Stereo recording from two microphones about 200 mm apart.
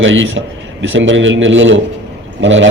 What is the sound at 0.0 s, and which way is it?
A man's voice, 70° right (ahead or behind).